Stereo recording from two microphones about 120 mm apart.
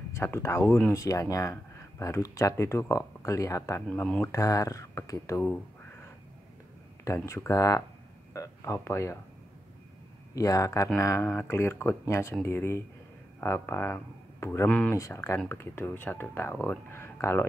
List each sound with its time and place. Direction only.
0.1 s speech: 20° left (ahead or behind)
4.3 s speech: 30° left (ahead or behind)
7.2 s speech: 25° left (ahead or behind)
10.3 s speech: 30° left (ahead or behind)
14.7 s speech: 10° left (ahead or behind)
15.0 s speech: 25° left (ahead or behind)
16.9 s a sound: 20° left (ahead or behind)